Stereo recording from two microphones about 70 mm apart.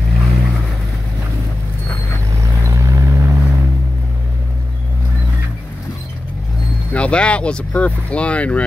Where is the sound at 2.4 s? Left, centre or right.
Right.